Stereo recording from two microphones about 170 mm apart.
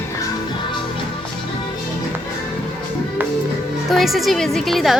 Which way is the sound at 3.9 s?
Centre (ahead or behind).